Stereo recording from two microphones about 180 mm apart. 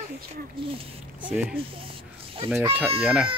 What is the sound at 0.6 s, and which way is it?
Speech, 30° right (ahead or behind).